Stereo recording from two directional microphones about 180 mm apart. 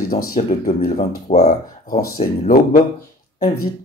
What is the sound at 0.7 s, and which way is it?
Speech, 40° left (ahead or behind).